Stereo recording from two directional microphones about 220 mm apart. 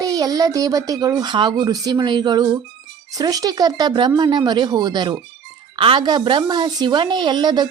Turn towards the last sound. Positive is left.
turn(degrees=-20)  # may be behind; listen again after turning